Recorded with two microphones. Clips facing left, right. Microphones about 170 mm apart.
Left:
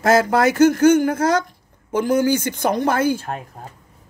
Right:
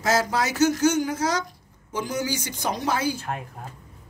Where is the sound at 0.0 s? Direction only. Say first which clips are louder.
Left 8 dB; 55° left (ahead or behind).